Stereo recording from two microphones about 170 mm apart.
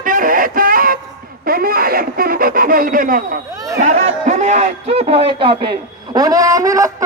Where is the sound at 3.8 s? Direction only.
45° right (ahead or behind).